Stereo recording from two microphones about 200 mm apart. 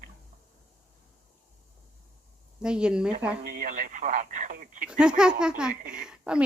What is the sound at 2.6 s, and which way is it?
Speech, 5° right (ahead or behind).